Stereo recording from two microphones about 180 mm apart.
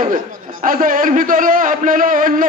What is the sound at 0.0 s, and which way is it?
A man's voice, 50° right (ahead or behind).